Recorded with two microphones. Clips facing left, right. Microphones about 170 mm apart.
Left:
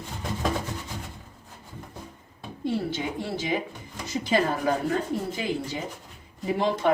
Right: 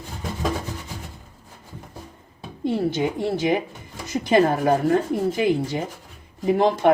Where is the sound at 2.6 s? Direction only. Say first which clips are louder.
Right 6 dB; 55° right (ahead or behind).